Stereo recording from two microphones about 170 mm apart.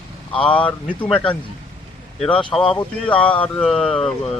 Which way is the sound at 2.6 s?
30° left (ahead or behind).